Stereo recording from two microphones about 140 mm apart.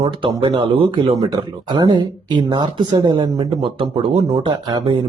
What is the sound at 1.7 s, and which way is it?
Speech, 30° right (ahead or behind).